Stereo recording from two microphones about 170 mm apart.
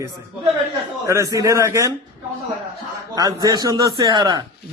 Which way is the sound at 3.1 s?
20° right (ahead or behind).